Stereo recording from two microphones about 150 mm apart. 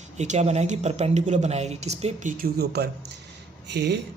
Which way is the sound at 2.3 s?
85° right.